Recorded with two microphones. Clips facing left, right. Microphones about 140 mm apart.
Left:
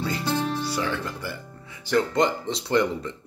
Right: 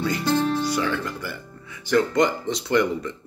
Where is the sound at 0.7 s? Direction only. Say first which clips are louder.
Right 3 dB; 30° left (ahead or behind).